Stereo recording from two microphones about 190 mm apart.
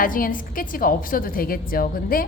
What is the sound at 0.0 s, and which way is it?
A woman's voice, 45° left (ahead or behind).